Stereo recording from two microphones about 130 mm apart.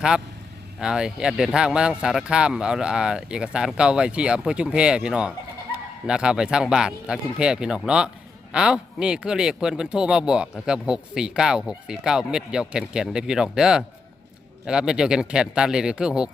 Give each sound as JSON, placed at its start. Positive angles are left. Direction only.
{"t": 0.8, "sound": "speech", "side_deg": -5}